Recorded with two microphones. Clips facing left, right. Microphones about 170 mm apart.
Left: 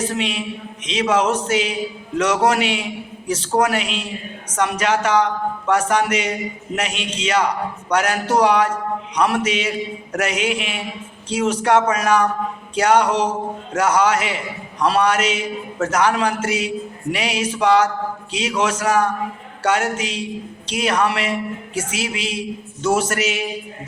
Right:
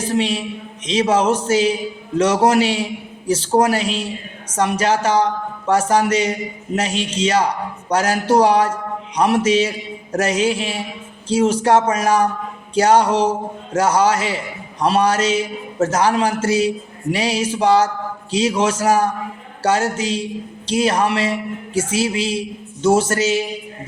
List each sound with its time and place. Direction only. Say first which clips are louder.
0.1 s a man's voice: right 4 dB; 35° right (ahead or behind)